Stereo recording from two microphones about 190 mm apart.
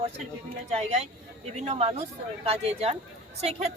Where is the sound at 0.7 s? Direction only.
35° right (ahead or behind).